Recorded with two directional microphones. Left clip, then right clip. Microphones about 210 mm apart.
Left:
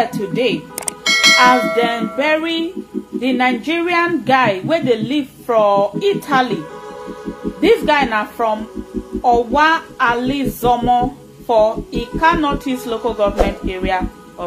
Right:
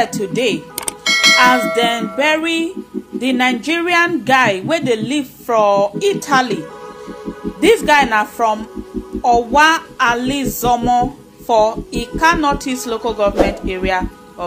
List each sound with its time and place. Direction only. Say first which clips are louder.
0.0 s child singing: even; 35° right (ahead or behind)
0.7 s bell: even; centre (ahead or behind)
2.1 s child singing: right 1 dB; 30° right (ahead or behind)
7.6 s child singing: right 2 dB; 30° right (ahead or behind)